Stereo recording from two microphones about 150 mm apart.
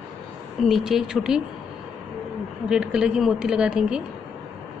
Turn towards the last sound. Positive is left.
turn(degrees=-5)  # may be behind; listen again after turning